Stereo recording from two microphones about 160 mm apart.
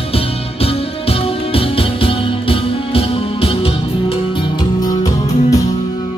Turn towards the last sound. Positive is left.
turn(degrees=20)  # may be behind; listen again after turning